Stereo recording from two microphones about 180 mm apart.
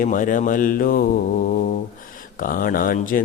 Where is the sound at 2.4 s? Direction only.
50° left (ahead or behind).